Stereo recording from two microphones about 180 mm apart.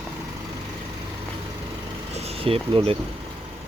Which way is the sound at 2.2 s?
35° right (ahead or behind).